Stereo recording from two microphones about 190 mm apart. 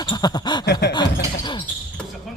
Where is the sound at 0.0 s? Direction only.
25° left (ahead or behind).